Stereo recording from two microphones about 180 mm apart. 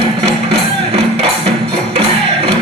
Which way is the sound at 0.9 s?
35° right (ahead or behind).